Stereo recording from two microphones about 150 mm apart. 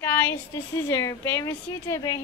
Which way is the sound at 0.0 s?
10° left (ahead or behind).